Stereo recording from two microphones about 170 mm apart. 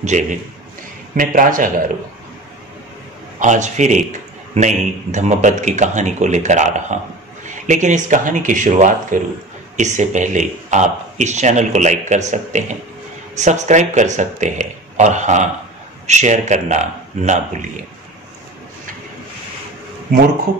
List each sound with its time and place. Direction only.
0.0 s a man's voice: 45° right (ahead or behind)
3.3 s a man's voice: 45° right (ahead or behind)